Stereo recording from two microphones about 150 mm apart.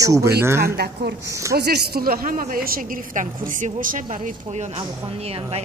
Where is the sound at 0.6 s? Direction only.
90° right.